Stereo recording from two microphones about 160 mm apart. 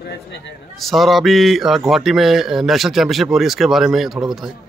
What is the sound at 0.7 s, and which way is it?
Speech, centre (ahead or behind).